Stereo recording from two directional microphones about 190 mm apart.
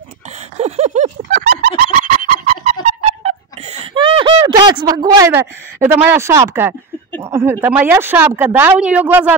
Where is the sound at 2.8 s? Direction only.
35° right (ahead or behind).